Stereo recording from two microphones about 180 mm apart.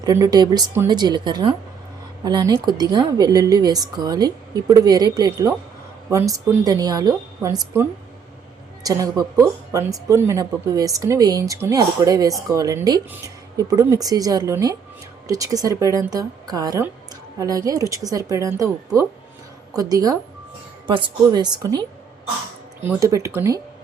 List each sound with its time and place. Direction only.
0.0 s speech: 20° right (ahead or behind)
19.7 s speech: 20° right (ahead or behind)